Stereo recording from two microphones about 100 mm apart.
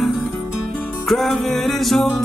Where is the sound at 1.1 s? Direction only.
Centre (ahead or behind).